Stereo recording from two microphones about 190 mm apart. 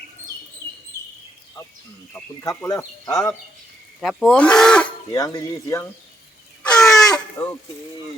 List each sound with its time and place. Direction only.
2.1 s speech: 15° left (ahead or behind)
4.0 s speech: centre (ahead or behind)
5.1 s speech: 20° left (ahead or behind)
6.6 s crow: 5° left (ahead or behind)
7.4 s speech: 15° left (ahead or behind)